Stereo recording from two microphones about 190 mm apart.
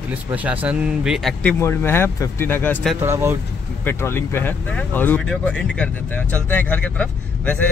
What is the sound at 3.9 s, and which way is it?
A man's voice, 15° left (ahead or behind).